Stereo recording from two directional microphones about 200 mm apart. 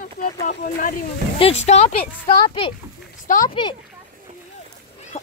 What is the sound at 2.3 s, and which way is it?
Speech, 25° left (ahead or behind).